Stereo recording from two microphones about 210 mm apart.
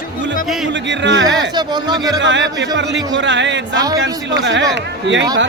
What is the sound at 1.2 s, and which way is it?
Speech, 20° right (ahead or behind).